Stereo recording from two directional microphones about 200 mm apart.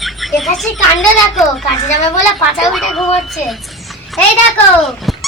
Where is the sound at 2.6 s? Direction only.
Centre (ahead or behind).